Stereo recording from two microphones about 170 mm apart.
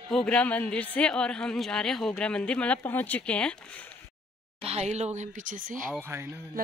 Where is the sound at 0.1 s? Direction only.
5° left (ahead or behind).